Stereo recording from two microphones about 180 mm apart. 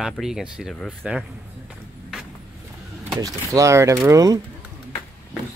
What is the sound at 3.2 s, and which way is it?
Speech, 20° right (ahead or behind).